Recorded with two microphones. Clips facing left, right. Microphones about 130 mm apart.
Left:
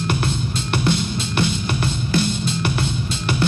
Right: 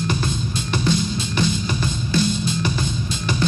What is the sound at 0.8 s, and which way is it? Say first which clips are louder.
Music: right 1 dB; 65° left (ahead or behind).